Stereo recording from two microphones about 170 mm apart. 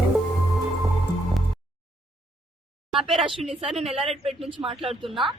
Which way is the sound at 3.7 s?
35° right (ahead or behind).